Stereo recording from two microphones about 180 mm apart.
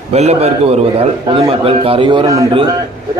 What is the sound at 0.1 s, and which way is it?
A man's voice, 35° right (ahead or behind).